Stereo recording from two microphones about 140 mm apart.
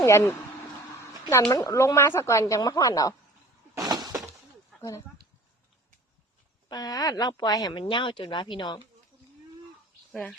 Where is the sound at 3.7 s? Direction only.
30° right (ahead or behind).